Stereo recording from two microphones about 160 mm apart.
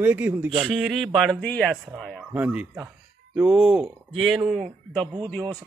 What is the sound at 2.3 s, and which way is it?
Speech, 10° right (ahead or behind).